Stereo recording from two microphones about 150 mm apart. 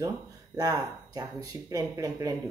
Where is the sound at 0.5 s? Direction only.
25° right (ahead or behind).